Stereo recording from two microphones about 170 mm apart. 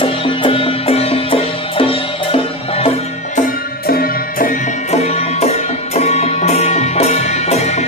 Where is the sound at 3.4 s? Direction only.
55° left (ahead or behind).